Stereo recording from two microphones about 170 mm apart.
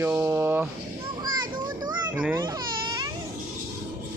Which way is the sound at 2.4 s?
25° right (ahead or behind).